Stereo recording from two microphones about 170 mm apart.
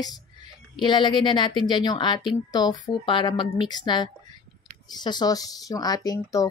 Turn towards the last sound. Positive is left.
turn(degrees=20)  # may be behind; listen again after turning